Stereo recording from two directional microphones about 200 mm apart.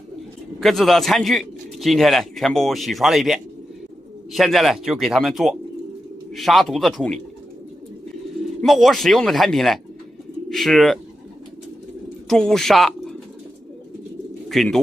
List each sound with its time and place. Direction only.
0.6 s a man's voice: centre (ahead or behind)
8.5 s a man's voice: centre (ahead or behind)
12.3 s speech: 5° left (ahead or behind)
14.5 s speech: centre (ahead or behind)